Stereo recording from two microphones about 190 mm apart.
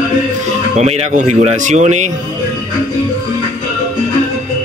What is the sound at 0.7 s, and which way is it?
Speech, 35° right (ahead or behind).